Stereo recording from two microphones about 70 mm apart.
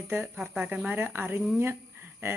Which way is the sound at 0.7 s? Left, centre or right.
Right.